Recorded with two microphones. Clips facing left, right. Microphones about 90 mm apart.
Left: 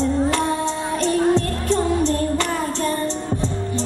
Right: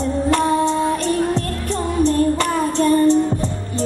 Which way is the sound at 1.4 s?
20° left (ahead or behind).